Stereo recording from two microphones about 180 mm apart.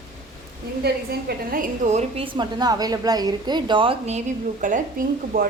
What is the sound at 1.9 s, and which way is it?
A woman's voice, 35° right (ahead or behind).